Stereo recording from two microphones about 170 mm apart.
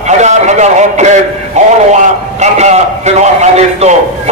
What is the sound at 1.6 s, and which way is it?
A man's voice, 45° right (ahead or behind).